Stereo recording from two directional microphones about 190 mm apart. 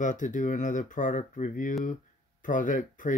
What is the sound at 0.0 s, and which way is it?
Speech, 40° left (ahead or behind).